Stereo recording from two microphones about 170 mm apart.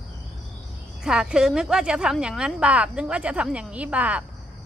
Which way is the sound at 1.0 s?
5° right (ahead or behind).